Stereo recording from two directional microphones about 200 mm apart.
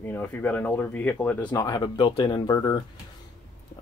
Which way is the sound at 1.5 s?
20° left (ahead or behind).